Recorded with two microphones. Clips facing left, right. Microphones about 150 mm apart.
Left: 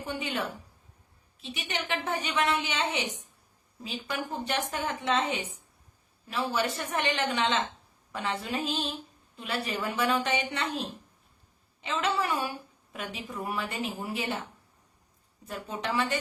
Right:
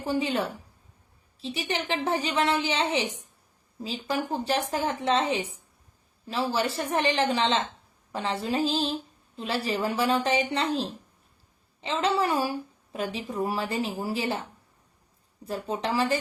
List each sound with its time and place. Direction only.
0.0 s a woman's voice: 30° right (ahead or behind)
15.4 s a woman's voice: 30° right (ahead or behind)